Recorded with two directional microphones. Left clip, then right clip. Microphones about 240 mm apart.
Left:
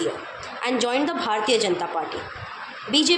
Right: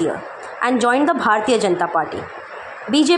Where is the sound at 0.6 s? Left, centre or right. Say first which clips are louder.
Right 7 dB; right.